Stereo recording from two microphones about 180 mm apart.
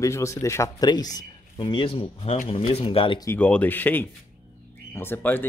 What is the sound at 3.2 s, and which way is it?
Speech, 10° left (ahead or behind).